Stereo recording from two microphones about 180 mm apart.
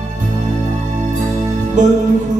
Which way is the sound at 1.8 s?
40° right (ahead or behind).